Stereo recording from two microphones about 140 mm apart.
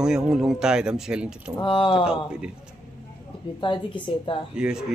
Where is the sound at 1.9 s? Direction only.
5° right (ahead or behind).